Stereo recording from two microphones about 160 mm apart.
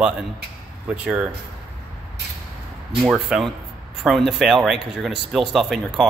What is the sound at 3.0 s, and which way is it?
Speech, 5° right (ahead or behind).